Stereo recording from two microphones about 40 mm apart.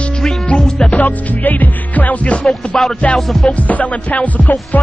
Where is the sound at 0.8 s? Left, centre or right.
Left.